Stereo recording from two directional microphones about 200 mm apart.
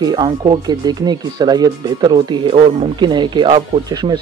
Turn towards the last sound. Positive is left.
turn(degrees=-20)  # may be behind; listen again after turning